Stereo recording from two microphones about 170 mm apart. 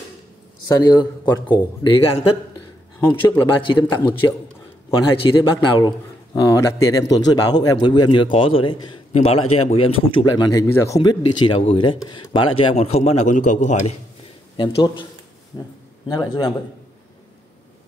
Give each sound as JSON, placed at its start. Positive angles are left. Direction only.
{"t": 0.7, "sound": "speech", "side_deg": 25}
{"t": 3.8, "sound": "a man's voice", "side_deg": 10}
{"t": 5.1, "sound": "a man's voice", "side_deg": 30}
{"t": 14.6, "sound": "speech", "side_deg": 25}